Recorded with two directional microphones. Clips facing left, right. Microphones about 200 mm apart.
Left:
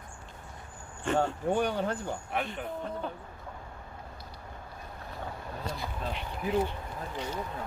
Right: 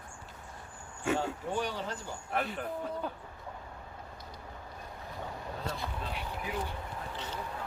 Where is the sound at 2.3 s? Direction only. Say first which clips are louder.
Right 3 dB; centre (ahead or behind).